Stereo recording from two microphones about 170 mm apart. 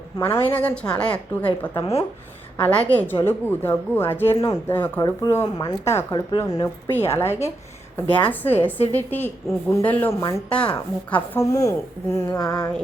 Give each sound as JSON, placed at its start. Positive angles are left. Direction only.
{"t": 0.2, "sound": "speech", "side_deg": 15}
{"t": 10.5, "sound": "speech", "side_deg": 5}
{"t": 10.8, "sound": "a woman's voice", "side_deg": 20}